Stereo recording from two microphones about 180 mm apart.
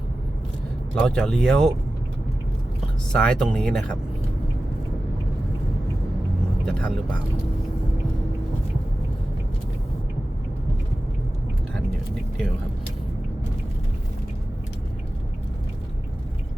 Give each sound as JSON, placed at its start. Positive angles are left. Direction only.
{"t": 1.0, "sound": "speech", "side_deg": 0}
{"t": 3.1, "sound": "speech", "side_deg": 5}
{"t": 6.7, "sound": "speech", "side_deg": 5}